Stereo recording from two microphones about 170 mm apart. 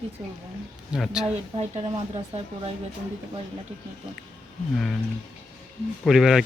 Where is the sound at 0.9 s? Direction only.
5° right (ahead or behind).